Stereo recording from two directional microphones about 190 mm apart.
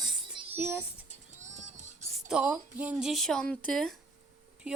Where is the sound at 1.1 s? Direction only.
40° right (ahead or behind).